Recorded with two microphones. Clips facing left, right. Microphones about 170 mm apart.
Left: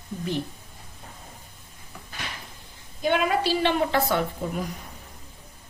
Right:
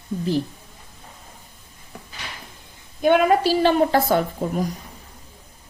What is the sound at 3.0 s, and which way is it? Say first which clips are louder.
A woman's voice: right 7 dB; 50° right (ahead or behind).